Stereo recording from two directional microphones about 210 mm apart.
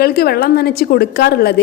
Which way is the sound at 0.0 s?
45° left (ahead or behind).